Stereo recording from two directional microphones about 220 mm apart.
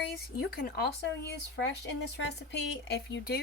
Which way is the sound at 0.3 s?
45° left (ahead or behind).